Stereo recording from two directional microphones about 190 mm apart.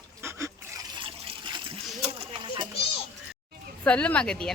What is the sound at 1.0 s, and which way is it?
Water, 25° right (ahead or behind).